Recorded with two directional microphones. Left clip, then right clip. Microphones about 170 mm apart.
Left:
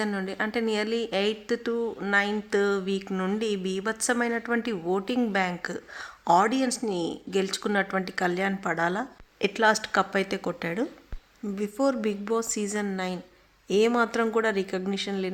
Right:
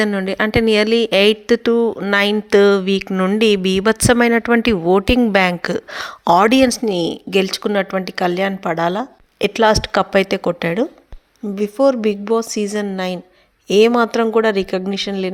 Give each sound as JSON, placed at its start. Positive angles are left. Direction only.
{"t": 0.0, "sound": "speech", "side_deg": -45}
{"t": 3.3, "sound": "a woman's voice", "side_deg": -45}